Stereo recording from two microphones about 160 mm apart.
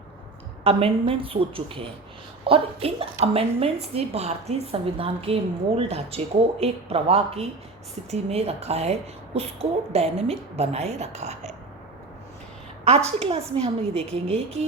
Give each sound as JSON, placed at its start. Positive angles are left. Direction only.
{"t": 0.6, "sound": "a woman's voice", "side_deg": -35}
{"t": 13.1, "sound": "a woman's voice", "side_deg": -35}